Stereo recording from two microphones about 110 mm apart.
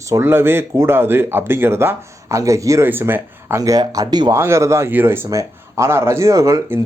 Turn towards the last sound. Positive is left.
turn(degrees=-30)  # may be behind; listen again after turning